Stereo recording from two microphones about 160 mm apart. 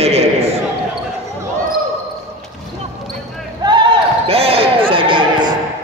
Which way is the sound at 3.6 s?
30° right (ahead or behind).